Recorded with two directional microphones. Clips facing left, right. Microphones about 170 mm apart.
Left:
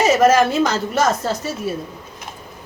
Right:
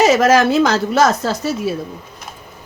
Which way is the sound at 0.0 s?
90° right.